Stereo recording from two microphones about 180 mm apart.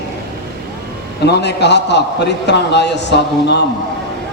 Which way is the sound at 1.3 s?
70° left (ahead or behind).